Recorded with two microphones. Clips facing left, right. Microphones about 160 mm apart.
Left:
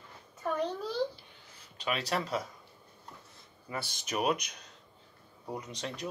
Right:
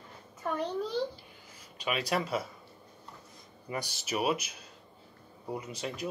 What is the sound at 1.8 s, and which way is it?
Speech, 10° right (ahead or behind).